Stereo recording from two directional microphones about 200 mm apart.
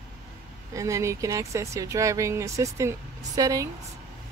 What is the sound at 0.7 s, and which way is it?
Speech, 15° right (ahead or behind).